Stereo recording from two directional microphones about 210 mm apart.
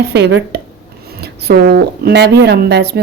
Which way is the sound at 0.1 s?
55° right (ahead or behind).